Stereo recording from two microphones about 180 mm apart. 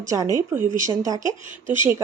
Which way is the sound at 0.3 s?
15° right (ahead or behind).